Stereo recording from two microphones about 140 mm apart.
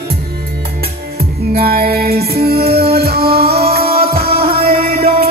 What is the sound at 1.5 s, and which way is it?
Music, 90° right.